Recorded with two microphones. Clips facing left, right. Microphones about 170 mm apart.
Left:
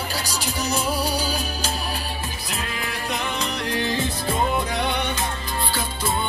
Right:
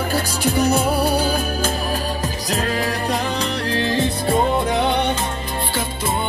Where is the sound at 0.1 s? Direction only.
55° right (ahead or behind).